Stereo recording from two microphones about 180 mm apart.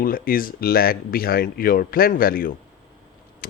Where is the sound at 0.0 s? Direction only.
55° left (ahead or behind).